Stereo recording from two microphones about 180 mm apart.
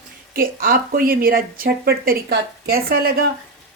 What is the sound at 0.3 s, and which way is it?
Speech, 55° right (ahead or behind).